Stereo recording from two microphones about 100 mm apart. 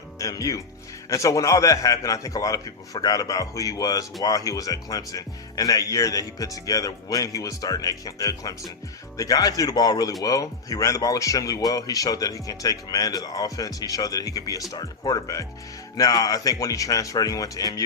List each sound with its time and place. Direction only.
0.2 s speech: 35° left (ahead or behind)